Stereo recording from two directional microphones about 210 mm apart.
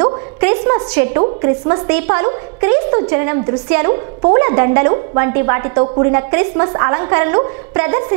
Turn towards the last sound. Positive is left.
turn(degrees=-10)  # may be behind; listen again after turning